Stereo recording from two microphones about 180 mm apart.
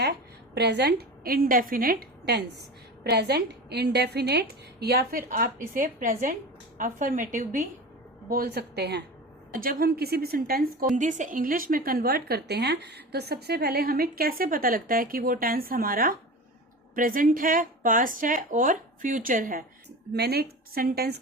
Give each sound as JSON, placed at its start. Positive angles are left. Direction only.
{"t": 0.5, "sound": "a woman's voice", "side_deg": -70}
{"t": 5.7, "sound": "a woman's voice", "side_deg": -45}
{"t": 8.3, "sound": "a woman's voice", "side_deg": -55}
{"t": 9.5, "sound": "a woman's voice", "side_deg": -55}
{"t": 20.1, "sound": "a woman's voice", "side_deg": -60}